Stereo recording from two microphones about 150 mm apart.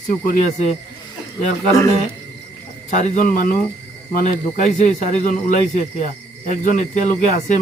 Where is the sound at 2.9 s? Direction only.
55° left (ahead or behind).